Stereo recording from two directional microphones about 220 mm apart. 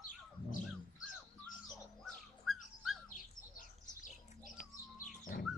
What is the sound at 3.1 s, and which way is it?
Bird, 35° left (ahead or behind).